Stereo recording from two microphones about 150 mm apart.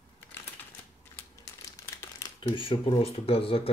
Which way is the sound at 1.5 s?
20° left (ahead or behind).